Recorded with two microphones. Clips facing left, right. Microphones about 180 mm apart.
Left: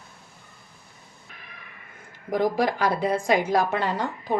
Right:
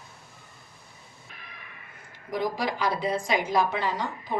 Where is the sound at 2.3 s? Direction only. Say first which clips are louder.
Left 6 dB; 50° left (ahead or behind).